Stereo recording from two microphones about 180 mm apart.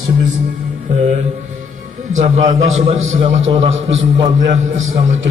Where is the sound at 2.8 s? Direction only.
40° right (ahead or behind).